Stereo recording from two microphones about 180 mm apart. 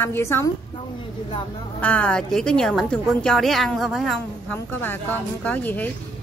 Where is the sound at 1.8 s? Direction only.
5° left (ahead or behind).